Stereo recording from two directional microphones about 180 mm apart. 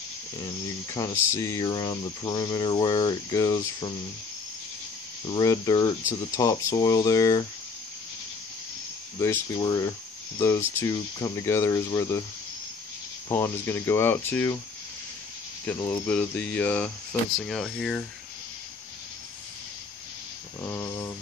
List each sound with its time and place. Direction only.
0.8 s speech: 15° left (ahead or behind)
5.2 s speech: 20° left (ahead or behind)
9.2 s speech: 15° left (ahead or behind)
13.3 s speech: 15° left (ahead or behind)
15.8 s speech: 10° left (ahead or behind)
20.6 s a sound: 15° left (ahead or behind)